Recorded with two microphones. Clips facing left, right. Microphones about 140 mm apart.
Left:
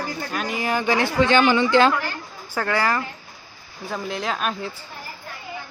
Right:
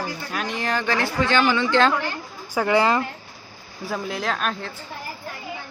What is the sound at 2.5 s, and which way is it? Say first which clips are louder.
Speech: right 3 dB; 15° right (ahead or behind).